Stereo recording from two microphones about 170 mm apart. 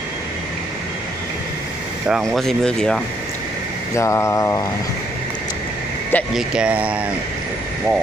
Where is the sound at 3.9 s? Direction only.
15° left (ahead or behind).